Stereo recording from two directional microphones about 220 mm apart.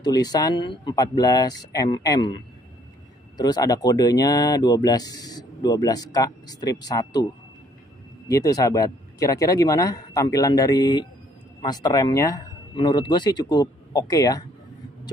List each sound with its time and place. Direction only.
0.0 s speech: 20° left (ahead or behind)
8.3 s speech: 15° left (ahead or behind)